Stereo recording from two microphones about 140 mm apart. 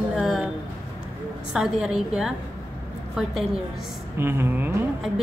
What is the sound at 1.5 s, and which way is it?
Speech, 5° right (ahead or behind).